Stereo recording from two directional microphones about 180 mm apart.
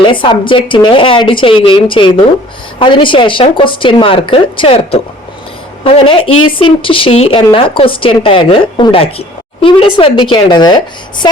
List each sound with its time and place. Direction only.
0.0 s a woman's voice: 25° left (ahead or behind)